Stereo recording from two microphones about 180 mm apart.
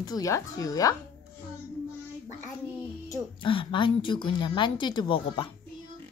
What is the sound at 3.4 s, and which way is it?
A child's voice, 30° left (ahead or behind).